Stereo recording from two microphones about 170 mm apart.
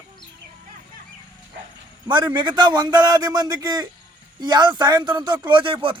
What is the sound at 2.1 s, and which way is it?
A man's voice, 25° right (ahead or behind).